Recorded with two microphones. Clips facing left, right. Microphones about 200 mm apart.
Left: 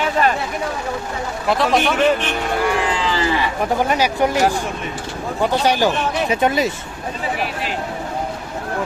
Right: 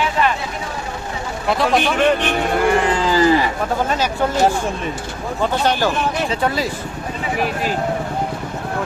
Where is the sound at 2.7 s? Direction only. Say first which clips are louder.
Right 4 dB; 45° right (ahead or behind).